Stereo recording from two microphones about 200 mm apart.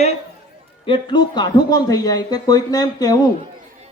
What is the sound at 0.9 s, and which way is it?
A man's voice, 25° left (ahead or behind).